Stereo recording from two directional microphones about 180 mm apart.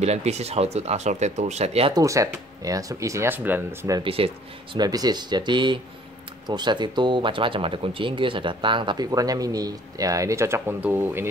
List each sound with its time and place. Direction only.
0.0 s speech: 35° right (ahead or behind)
2.0 s speech: 20° right (ahead or behind)
4.0 s speech: 30° right (ahead or behind); by 11.2 s 10° right (ahead or behind)